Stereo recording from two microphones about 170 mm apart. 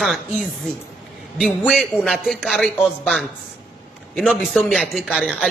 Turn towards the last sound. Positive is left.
turn(degrees=-5)  # may be behind; listen again after turning